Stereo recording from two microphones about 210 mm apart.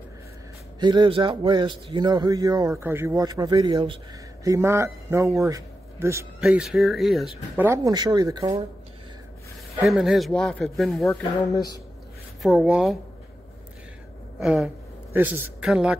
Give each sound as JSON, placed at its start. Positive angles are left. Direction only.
{"t": 0.7, "sound": "speech", "side_deg": -20}
{"t": 4.5, "sound": "speech", "side_deg": -15}
{"t": 9.8, "sound": "speech", "side_deg": 0}
{"t": 12.4, "sound": "speech", "side_deg": -5}
{"t": 14.4, "sound": "speech", "side_deg": 0}